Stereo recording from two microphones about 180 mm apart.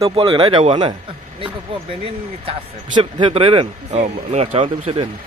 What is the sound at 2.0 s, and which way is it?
Speech, 30° right (ahead or behind).